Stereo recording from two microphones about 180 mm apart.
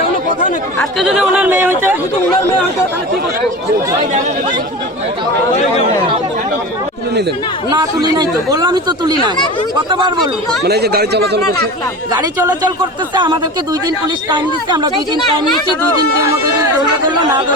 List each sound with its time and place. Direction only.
0.8 s speech: centre (ahead or behind)
7.1 s speech: 65° right (ahead or behind)
7.7 s speech: 20° right (ahead or behind)
10.6 s speech: 65° right (ahead or behind)
12.1 s speech: 20° right (ahead or behind)